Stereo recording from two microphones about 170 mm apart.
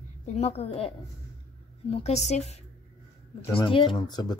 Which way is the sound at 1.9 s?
40° left (ahead or behind).